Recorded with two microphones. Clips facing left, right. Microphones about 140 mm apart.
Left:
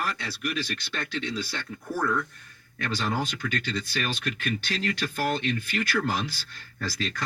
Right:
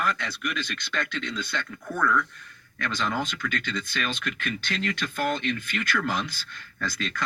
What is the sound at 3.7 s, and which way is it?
Speech, 35° left (ahead or behind).